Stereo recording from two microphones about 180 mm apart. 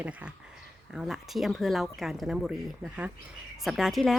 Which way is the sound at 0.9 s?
Centre (ahead or behind).